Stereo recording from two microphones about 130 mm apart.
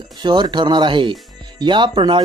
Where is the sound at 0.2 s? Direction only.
35° right (ahead or behind).